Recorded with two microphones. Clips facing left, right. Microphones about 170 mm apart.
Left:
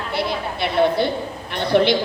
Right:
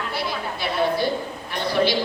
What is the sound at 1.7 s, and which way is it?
Speech, 60° left (ahead or behind).